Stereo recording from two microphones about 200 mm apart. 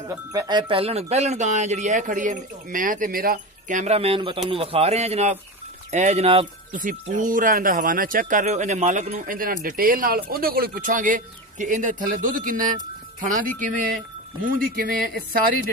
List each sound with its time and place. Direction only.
0.1 s speech: 15° right (ahead or behind); by 15.5 s 45° right (ahead or behind)